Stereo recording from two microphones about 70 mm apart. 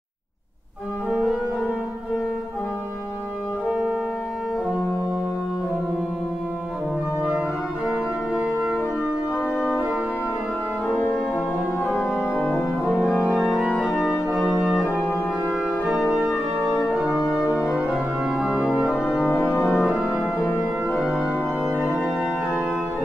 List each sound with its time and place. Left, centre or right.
3.6 s organ: centre
7.2 s organ: centre
10.9 s organ: centre
13.2 s organ: centre
15.9 s organ: centre